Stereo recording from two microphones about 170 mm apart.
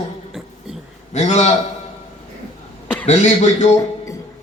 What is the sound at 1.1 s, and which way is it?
Speech, 45° left (ahead or behind).